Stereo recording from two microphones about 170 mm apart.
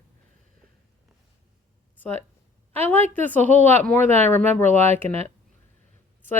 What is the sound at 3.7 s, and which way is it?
Speech, 10° left (ahead or behind).